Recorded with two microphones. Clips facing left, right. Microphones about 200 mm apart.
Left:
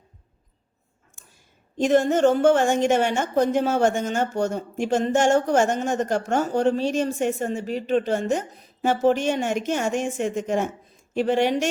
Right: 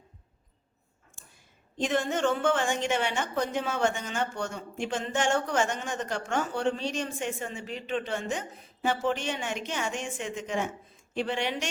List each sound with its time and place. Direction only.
1.8 s a woman's voice: 45° left (ahead or behind)